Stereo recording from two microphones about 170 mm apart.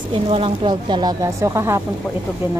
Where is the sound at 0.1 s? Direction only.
30° right (ahead or behind); by 1.8 s 15° right (ahead or behind).